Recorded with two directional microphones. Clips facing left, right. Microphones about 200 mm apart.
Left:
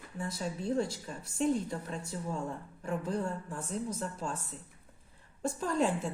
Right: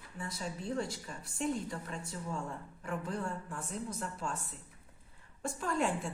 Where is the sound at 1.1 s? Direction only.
25° left (ahead or behind).